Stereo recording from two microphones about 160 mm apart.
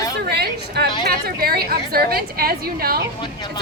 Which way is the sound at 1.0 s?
70° right (ahead or behind).